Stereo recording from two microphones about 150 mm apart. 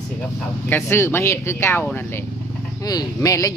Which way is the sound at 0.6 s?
15° left (ahead or behind).